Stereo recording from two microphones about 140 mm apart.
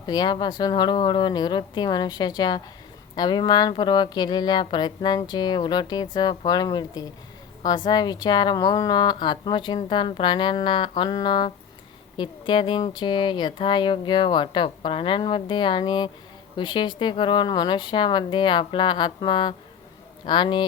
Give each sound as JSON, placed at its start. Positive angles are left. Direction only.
{"t": 0.0, "sound": "speech", "side_deg": 30}